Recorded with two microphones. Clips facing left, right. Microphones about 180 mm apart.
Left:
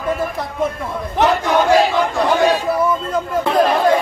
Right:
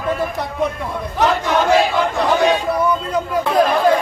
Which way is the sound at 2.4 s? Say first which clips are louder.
Even; centre (ahead or behind).